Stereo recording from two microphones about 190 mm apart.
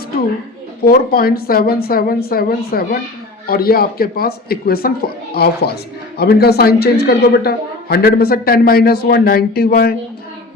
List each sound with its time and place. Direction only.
0.9 s a man's voice: 50° left (ahead or behind)